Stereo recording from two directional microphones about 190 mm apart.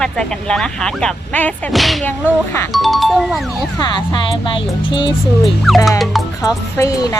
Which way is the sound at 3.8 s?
25° left (ahead or behind).